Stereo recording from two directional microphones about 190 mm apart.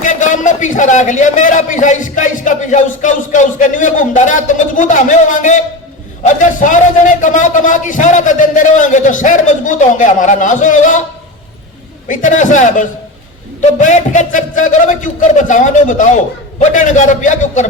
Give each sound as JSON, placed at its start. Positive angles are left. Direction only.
{"t": 0.0, "sound": "a man's voice", "side_deg": 40}
{"t": 12.0, "sound": "a man's voice", "side_deg": 45}